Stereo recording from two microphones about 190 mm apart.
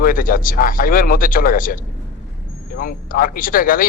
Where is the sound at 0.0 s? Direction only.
45° left (ahead or behind).